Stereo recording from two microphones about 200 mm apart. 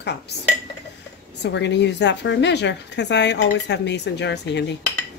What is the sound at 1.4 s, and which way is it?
A woman's voice, 60° left (ahead or behind).